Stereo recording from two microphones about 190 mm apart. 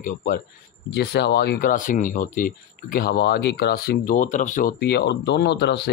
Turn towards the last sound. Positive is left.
turn(degrees=65)  # may be behind; listen again after turning